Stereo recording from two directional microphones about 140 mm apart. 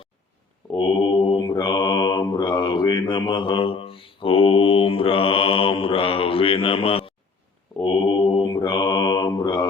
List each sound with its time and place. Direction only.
0.8 s mantra: 35° left (ahead or behind)